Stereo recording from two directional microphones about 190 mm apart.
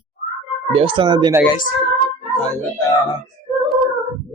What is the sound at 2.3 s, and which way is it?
Speech, 5° left (ahead or behind).